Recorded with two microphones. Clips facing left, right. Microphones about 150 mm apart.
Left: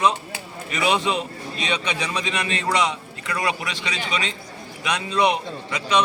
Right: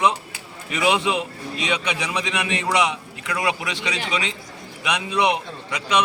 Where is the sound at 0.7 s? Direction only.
15° right (ahead or behind).